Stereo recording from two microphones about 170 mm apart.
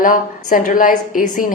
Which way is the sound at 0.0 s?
50° left (ahead or behind).